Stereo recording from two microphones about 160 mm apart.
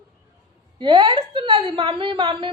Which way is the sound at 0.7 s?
30° right (ahead or behind).